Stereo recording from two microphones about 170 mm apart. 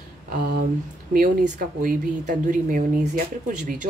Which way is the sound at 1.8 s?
55° right (ahead or behind).